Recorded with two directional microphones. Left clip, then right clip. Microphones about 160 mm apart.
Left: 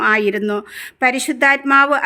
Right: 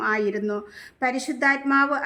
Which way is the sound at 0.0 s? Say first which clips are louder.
Left 8 dB; 25° left (ahead or behind).